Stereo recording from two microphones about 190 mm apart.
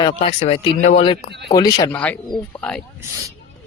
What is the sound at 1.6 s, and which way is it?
Speech, 20° left (ahead or behind).